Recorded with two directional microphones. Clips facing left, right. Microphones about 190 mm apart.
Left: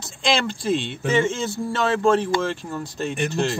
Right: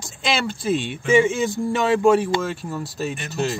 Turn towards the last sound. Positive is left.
turn(degrees=-5)  # may be behind; listen again after turning